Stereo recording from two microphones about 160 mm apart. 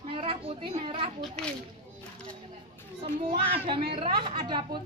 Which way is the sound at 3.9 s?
35° right (ahead or behind).